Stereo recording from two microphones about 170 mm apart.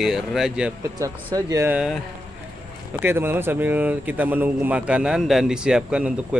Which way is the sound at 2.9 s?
15° right (ahead or behind).